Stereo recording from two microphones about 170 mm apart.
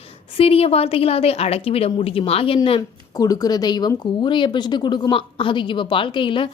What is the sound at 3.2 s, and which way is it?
A woman's voice, 20° left (ahead or behind).